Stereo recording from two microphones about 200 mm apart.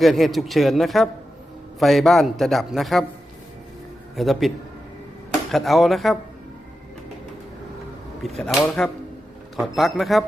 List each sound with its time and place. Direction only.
0.0 s a man's voice: centre (ahead or behind)
4.1 s a man's voice: centre (ahead or behind)
8.4 s a man's voice: centre (ahead or behind)